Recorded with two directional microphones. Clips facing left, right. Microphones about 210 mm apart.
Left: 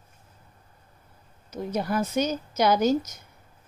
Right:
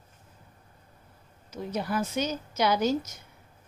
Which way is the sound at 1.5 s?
45° left (ahead or behind).